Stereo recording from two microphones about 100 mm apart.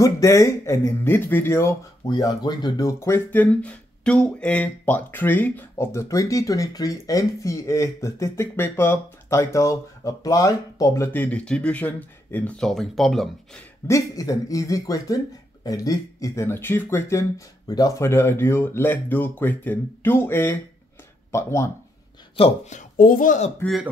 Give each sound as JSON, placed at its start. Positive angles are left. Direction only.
{"t": 0.0, "sound": "speech", "side_deg": 30}
{"t": 2.0, "sound": "speech", "side_deg": 40}
{"t": 11.1, "sound": "speech", "side_deg": 15}
{"t": 13.8, "sound": "speech", "side_deg": 35}
{"t": 22.4, "sound": "speech", "side_deg": 70}
{"t": 23.6, "sound": "speech", "side_deg": 15}